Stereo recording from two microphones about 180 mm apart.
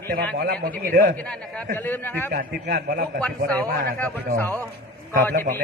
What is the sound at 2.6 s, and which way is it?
Speech, 60° right (ahead or behind).